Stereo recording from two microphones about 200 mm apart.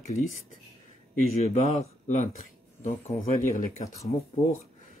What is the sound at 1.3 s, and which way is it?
Speech, 30° left (ahead or behind).